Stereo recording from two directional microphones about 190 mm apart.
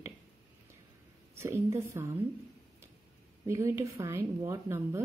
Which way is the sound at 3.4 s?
15° right (ahead or behind).